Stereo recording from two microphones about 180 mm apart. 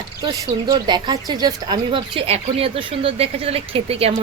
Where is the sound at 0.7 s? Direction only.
25° right (ahead or behind).